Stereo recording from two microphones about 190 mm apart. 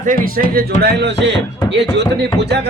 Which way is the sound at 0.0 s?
45° right (ahead or behind).